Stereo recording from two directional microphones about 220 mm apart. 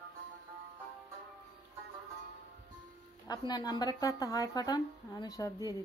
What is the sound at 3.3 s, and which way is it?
Speech, 20° left (ahead or behind).